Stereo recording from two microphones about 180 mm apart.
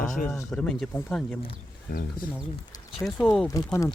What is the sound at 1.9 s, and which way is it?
Speech, 55° left (ahead or behind).